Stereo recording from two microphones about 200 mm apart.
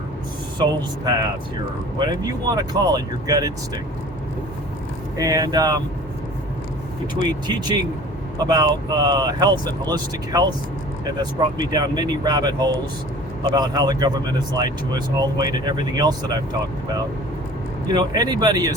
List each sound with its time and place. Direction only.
0.6 s speech: 20° right (ahead or behind)
5.1 s speech: 15° right (ahead or behind)
7.2 s speech: 20° right (ahead or behind)
17.9 s speech: 20° right (ahead or behind)